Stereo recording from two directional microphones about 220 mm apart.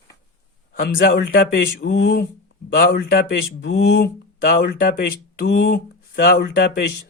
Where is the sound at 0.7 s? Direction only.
50° left (ahead or behind).